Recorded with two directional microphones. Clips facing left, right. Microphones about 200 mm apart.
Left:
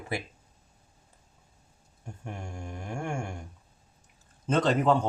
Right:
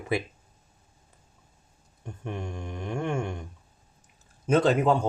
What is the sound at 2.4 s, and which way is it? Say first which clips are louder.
Speech: right 4 dB; 20° right (ahead or behind).